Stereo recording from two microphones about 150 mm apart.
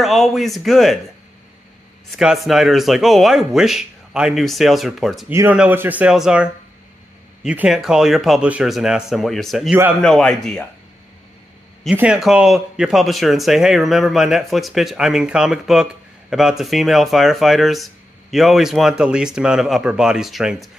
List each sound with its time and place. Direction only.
0.0 s speech: centre (ahead or behind)
2.1 s speech: centre (ahead or behind)
5.3 s speech: 20° right (ahead or behind); by 10.6 s 5° left (ahead or behind)
11.9 s speech: 10° right (ahead or behind)